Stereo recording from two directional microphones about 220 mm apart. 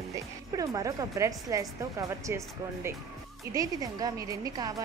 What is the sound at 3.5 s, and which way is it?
Speech, 15° right (ahead or behind).